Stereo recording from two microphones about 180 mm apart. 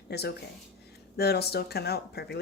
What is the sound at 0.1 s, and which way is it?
Speech, 65° left (ahead or behind).